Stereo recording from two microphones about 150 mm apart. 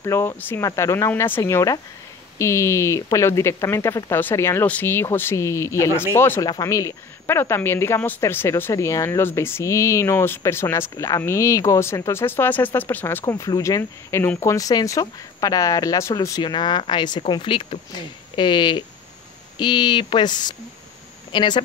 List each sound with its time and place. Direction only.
0.0 s speech: 20° left (ahead or behind)
13.2 s speech: 25° left (ahead or behind)